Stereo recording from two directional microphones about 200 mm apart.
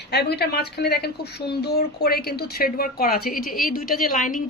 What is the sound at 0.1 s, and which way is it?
A woman's voice, 55° left (ahead or behind).